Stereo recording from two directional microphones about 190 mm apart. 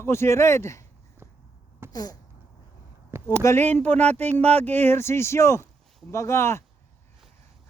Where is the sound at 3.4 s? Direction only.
15° left (ahead or behind).